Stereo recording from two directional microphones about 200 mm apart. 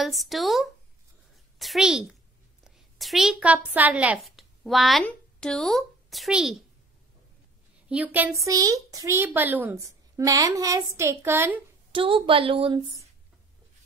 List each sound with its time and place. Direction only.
0.0 s a woman's voice: centre (ahead or behind)
7.9 s a woman's voice: 10° right (ahead or behind)
11.9 s a woman's voice: 25° right (ahead or behind)